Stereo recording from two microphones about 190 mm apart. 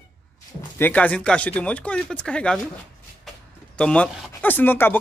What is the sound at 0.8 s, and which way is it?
Speech, 5° left (ahead or behind).